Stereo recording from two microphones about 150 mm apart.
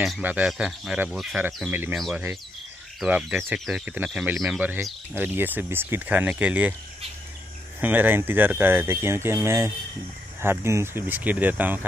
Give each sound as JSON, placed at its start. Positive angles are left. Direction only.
{"t": 0.2, "sound": "speech", "side_deg": -10}
{"t": 3.1, "sound": "speech", "side_deg": -10}
{"t": 7.8, "sound": "speech", "side_deg": -10}